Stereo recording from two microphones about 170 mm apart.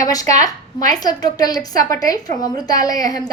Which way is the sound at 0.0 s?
20° left (ahead or behind).